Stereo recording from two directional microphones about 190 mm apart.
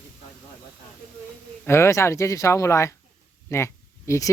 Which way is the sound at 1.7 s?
15° left (ahead or behind).